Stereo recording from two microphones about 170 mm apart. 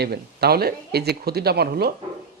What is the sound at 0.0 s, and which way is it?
Speech, 70° right (ahead or behind).